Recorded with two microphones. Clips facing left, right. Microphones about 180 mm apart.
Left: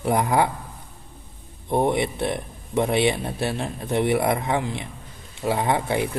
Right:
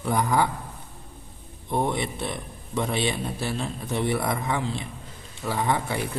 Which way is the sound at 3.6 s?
20° left (ahead or behind).